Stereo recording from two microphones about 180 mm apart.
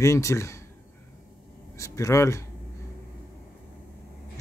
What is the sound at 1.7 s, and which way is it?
Speech, 15° left (ahead or behind).